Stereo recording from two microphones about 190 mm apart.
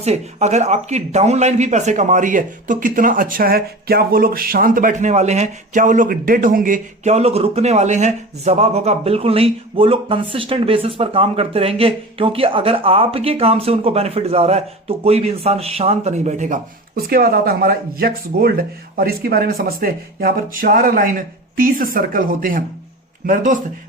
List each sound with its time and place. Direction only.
0.0 s a man's voice: 35° right (ahead or behind)